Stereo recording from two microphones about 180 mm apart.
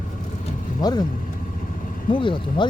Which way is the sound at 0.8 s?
20° left (ahead or behind).